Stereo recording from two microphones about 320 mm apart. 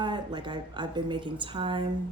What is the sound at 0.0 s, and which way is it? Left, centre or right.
Speech, centre.